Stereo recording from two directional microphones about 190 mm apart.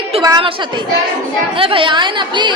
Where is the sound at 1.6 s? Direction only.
25° right (ahead or behind).